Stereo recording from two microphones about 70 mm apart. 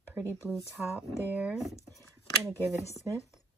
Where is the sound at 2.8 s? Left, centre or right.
Left.